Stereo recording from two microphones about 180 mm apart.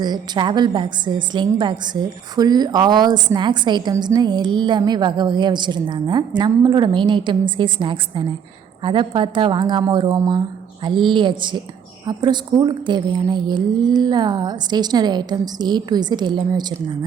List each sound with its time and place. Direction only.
0.0 s a woman's voice: 25° right (ahead or behind)